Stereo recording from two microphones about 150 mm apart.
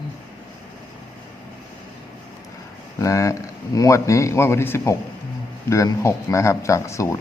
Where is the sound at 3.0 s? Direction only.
20° left (ahead or behind).